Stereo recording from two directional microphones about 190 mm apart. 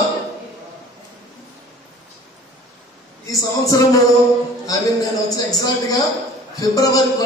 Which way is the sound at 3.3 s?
15° left (ahead or behind).